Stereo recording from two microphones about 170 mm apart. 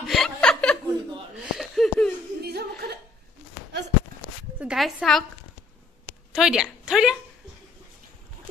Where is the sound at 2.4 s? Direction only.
70° right (ahead or behind).